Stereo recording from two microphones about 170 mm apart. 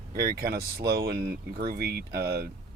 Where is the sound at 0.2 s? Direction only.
60° right (ahead or behind).